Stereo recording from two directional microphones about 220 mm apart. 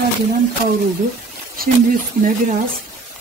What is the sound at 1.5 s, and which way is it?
Speech, 40° right (ahead or behind).